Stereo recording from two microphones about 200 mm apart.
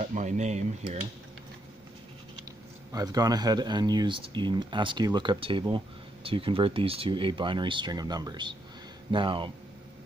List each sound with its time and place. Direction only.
0.0 s speech: 40° right (ahead or behind)
2.9 s speech: 20° right (ahead or behind)